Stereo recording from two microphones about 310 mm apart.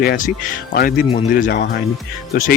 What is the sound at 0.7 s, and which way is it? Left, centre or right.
Speech, left.